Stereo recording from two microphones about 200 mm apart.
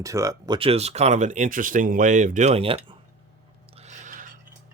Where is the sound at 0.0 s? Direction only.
15° right (ahead or behind).